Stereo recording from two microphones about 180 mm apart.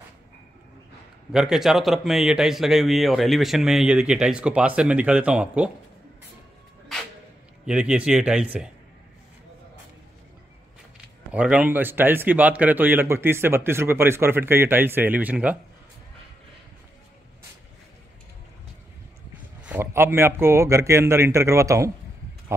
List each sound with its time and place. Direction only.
1.3 s speech: centre (ahead or behind)
7.6 s a man's voice: 5° right (ahead or behind)
11.3 s a man's voice: 5° right (ahead or behind)
19.6 s a man's voice: 10° right (ahead or behind)